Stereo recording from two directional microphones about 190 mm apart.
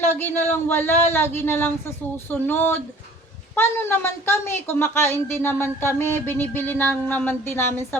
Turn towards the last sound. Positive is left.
turn(degrees=10)  # may be behind; listen again after turning